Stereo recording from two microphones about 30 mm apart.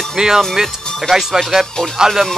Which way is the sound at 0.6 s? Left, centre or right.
Centre.